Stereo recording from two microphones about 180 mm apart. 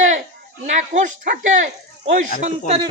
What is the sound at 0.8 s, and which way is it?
Speech, 40° right (ahead or behind).